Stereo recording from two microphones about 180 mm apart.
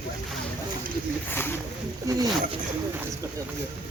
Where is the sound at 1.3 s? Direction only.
10° left (ahead or behind).